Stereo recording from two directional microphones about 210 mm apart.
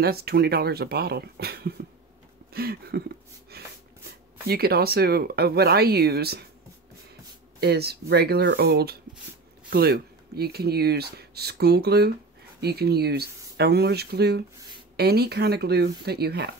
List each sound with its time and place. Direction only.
0.0 s speech: 50° right (ahead or behind)
4.5 s speech: 45° right (ahead or behind)
7.6 s speech: 50° right (ahead or behind)